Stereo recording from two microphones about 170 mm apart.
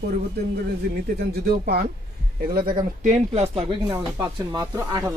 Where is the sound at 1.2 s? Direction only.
65° right (ahead or behind).